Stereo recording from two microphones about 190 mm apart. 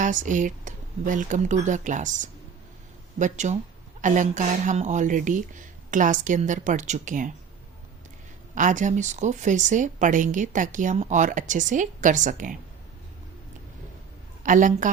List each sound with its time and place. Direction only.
0.0 s speech: 40° right (ahead or behind)
8.5 s speech: 40° right (ahead or behind)
14.4 s a woman's voice: 45° right (ahead or behind)